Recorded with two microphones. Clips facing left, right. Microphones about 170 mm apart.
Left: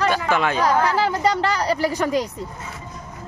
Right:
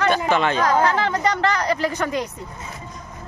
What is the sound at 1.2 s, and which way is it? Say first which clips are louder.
Speech: left 1 dB; 35° left (ahead or behind).